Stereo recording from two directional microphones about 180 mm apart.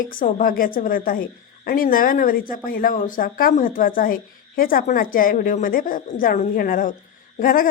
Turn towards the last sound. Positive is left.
turn(degrees=50)  # may be behind; listen again after turning